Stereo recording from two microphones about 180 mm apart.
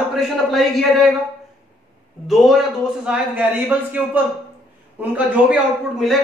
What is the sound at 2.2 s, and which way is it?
A man's voice, centre (ahead or behind).